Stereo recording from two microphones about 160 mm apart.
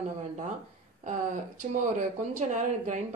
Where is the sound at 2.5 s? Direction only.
50° right (ahead or behind).